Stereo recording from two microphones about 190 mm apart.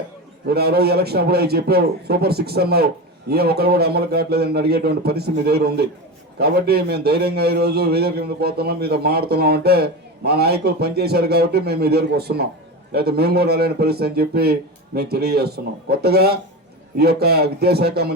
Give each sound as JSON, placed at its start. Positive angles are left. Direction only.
{"t": 0.4, "sound": "a man's voice", "side_deg": -55}